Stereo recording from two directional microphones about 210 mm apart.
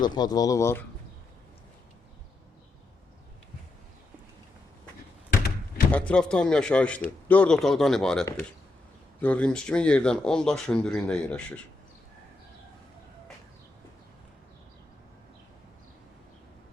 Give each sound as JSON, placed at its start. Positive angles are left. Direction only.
{"t": 0.0, "sound": "speech", "side_deg": 20}
{"t": 5.9, "sound": "speech", "side_deg": 5}
{"t": 9.2, "sound": "speech", "side_deg": 5}